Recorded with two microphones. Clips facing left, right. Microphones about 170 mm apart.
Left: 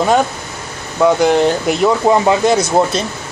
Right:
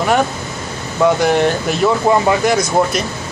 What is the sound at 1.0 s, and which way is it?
Speech, 15° left (ahead or behind).